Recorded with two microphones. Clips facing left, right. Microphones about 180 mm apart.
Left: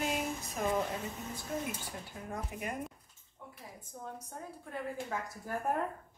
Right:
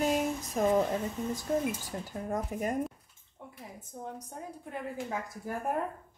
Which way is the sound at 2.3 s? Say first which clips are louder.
Right 7 dB; 40° right (ahead or behind).